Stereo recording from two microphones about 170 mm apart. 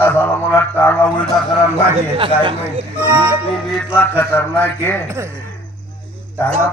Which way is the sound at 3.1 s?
10° right (ahead or behind).